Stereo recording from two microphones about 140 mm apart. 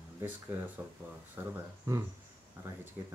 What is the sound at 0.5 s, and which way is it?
Speech, 15° right (ahead or behind).